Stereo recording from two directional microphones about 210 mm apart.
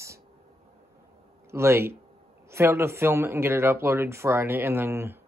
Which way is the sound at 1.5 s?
10° right (ahead or behind).